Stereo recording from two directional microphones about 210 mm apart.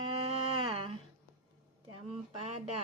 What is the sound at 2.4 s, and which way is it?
Speech, 30° right (ahead or behind).